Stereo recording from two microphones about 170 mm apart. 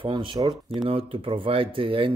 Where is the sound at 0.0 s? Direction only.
30° right (ahead or behind).